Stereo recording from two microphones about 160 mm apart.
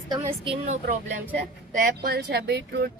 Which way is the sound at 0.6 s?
50° right (ahead or behind).